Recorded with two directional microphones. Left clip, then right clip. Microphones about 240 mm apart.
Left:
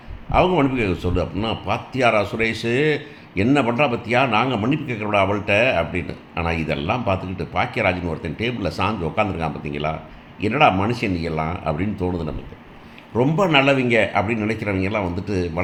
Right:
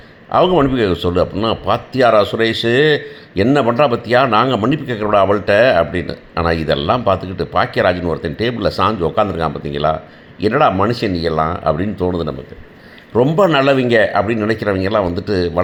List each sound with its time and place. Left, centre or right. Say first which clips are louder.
0.3 s a man's voice: right 5 dB; right